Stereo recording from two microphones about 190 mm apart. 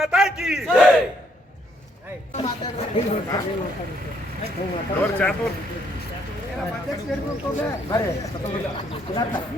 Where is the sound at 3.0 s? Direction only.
30° left (ahead or behind).